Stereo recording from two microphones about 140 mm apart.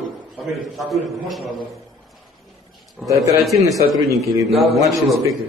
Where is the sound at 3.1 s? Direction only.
25° right (ahead or behind).